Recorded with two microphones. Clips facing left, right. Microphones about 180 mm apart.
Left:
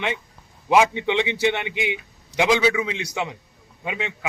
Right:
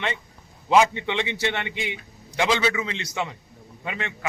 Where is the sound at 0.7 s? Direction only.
15° left (ahead or behind).